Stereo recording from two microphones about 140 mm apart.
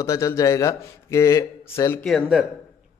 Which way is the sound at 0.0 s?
20° left (ahead or behind).